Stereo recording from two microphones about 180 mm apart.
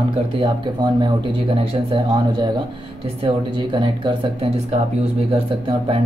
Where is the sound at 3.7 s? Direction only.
30° right (ahead or behind).